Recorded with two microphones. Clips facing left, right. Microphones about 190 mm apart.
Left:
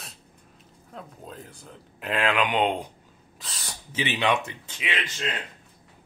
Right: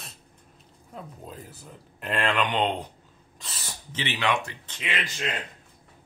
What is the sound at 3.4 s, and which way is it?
Owl, centre (ahead or behind).